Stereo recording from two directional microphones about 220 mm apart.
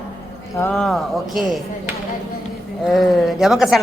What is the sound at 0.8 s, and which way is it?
Speech, centre (ahead or behind).